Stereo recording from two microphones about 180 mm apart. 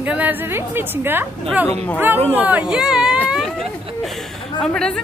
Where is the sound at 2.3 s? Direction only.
10° right (ahead or behind).